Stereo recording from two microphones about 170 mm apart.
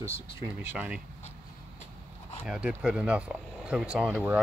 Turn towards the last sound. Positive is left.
turn(degrees=-5)  # may be behind; listen again after turning